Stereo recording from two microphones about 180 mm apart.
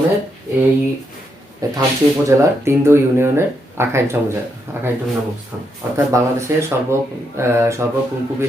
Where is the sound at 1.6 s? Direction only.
20° right (ahead or behind).